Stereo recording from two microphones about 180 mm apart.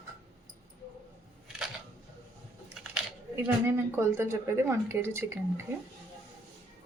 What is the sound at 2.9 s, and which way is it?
Speech, 10° right (ahead or behind).